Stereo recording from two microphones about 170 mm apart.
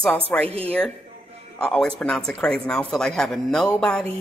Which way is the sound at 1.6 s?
5° left (ahead or behind).